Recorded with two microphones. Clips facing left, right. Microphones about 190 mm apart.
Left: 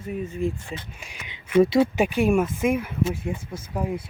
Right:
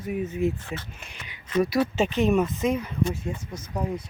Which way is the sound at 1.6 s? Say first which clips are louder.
Left 5 dB; 25° left (ahead or behind).